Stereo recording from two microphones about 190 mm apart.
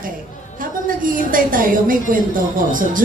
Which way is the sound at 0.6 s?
45° right (ahead or behind).